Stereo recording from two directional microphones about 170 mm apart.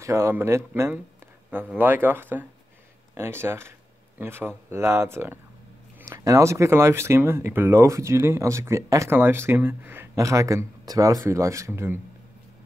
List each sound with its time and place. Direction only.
0.0 s speech: 15° right (ahead or behind)